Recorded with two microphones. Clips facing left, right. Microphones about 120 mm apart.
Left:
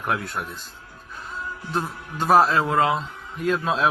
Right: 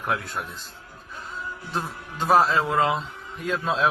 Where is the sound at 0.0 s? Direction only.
Centre (ahead or behind).